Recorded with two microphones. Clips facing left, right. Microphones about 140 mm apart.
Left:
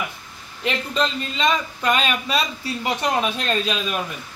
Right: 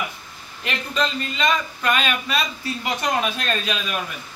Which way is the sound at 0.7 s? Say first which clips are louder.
Left 2 dB; 20° left (ahead or behind).